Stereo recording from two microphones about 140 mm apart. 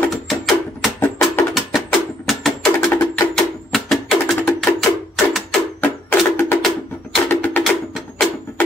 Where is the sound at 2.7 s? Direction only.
15° left (ahead or behind).